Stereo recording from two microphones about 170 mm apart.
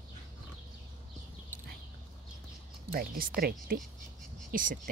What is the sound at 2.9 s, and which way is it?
Speech, 60° right (ahead or behind).